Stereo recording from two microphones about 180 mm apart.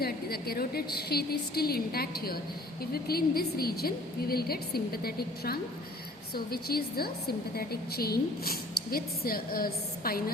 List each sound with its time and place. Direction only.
0.0 s a woman's voice: 60° left (ahead or behind)